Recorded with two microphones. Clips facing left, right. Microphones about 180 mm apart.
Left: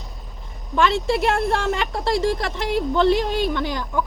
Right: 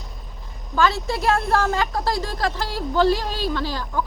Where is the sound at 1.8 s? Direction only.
25° left (ahead or behind).